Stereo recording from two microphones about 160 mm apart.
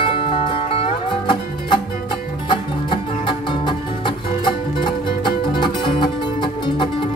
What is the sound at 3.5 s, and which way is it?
Music, 30° left (ahead or behind).